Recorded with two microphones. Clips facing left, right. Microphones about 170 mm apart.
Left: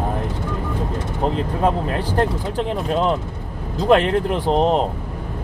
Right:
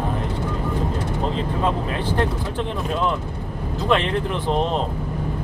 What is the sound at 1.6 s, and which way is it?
Speech, 40° left (ahead or behind).